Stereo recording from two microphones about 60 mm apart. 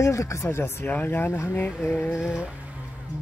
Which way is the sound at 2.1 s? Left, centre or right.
Centre.